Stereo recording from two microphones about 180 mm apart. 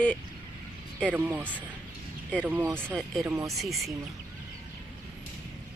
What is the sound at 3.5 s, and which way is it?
Speech, centre (ahead or behind).